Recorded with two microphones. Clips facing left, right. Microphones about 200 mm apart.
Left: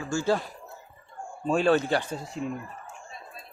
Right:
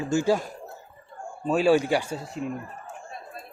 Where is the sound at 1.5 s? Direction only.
5° right (ahead or behind).